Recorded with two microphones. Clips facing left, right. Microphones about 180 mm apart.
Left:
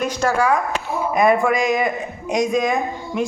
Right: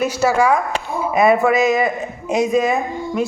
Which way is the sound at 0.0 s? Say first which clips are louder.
Right 3 dB; 10° right (ahead or behind).